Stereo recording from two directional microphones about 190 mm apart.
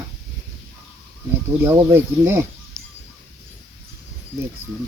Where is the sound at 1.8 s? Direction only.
15° right (ahead or behind).